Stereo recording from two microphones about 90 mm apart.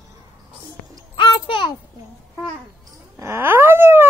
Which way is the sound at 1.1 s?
50° left (ahead or behind).